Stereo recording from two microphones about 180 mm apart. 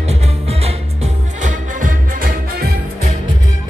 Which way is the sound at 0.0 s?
35° right (ahead or behind).